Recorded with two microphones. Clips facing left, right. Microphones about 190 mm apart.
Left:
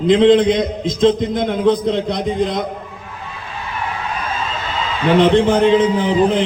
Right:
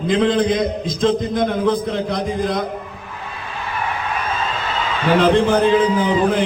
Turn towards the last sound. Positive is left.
turn(degrees=20)  # may be behind; listen again after turning